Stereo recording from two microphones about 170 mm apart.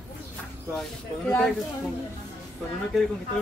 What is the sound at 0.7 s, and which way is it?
Speech, 5° left (ahead or behind).